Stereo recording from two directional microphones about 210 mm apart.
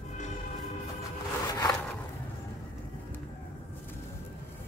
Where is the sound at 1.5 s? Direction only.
15° left (ahead or behind).